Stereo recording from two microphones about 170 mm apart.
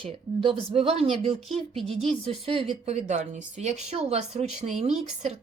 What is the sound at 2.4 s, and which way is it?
Speech, 35° right (ahead or behind).